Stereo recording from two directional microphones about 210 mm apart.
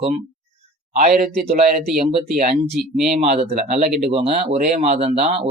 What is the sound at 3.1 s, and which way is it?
Speech, 30° right (ahead or behind).